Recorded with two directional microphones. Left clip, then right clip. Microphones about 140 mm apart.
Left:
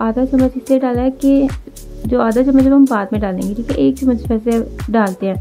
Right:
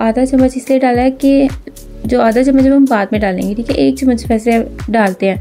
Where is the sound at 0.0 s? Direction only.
20° right (ahead or behind).